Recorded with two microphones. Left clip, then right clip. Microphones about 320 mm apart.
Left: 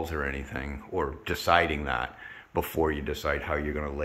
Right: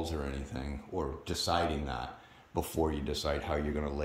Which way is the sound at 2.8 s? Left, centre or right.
Centre.